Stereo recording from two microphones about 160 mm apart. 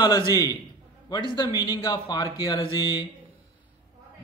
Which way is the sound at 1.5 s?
25° left (ahead or behind).